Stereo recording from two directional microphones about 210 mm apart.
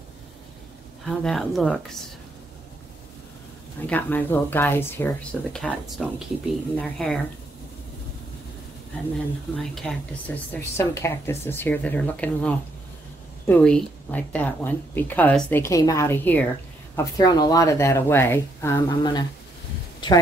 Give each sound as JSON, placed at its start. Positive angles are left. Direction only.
{"t": 1.0, "sound": "a woman's voice", "side_deg": 0}
{"t": 3.8, "sound": "a woman's voice", "side_deg": 10}
{"t": 9.6, "sound": "speech", "side_deg": 5}